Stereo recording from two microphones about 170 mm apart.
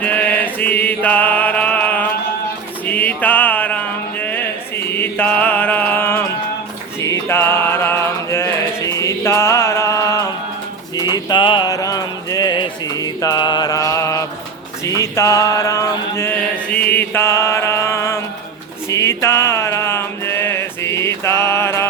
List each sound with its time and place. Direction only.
0.0 s music: 10° left (ahead or behind)
7.0 s mantra: 15° left (ahead or behind)
10.9 s music: 25° left (ahead or behind)
14.8 s mantra: 20° left (ahead or behind)
18.9 s a sound: 15° left (ahead or behind)